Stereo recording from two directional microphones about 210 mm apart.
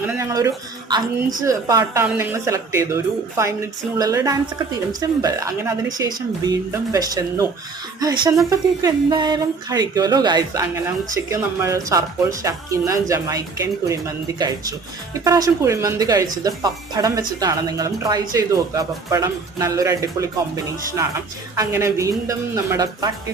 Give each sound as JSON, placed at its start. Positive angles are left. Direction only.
{"t": 0.0, "sound": "speech", "side_deg": -10}
{"t": 21.5, "sound": "speech", "side_deg": -15}